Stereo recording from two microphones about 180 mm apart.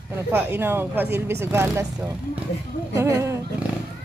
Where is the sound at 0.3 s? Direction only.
10° right (ahead or behind).